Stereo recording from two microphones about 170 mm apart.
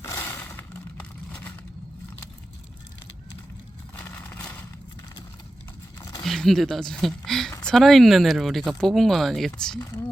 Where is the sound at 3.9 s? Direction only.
15° left (ahead or behind).